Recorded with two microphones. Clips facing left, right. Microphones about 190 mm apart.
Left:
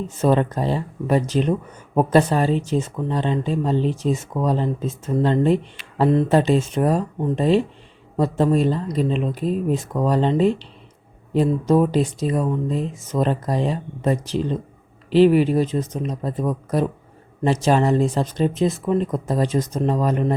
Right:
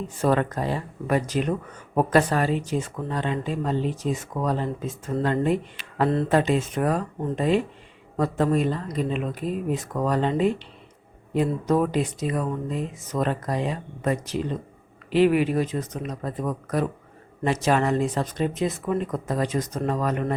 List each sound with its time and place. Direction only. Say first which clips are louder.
0.2 s speech: left 4 dB; 25° left (ahead or behind)